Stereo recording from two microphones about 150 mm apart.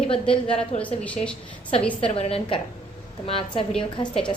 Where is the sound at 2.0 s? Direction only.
40° left (ahead or behind).